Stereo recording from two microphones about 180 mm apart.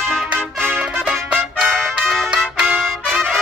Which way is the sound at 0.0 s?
5° left (ahead or behind).